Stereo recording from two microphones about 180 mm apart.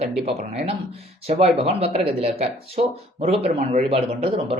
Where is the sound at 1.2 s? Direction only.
35° right (ahead or behind).